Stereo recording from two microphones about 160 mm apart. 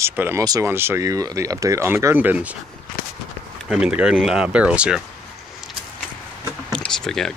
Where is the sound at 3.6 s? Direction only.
5° right (ahead or behind).